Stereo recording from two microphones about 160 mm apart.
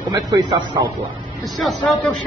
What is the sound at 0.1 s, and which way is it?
Speech, 30° right (ahead or behind).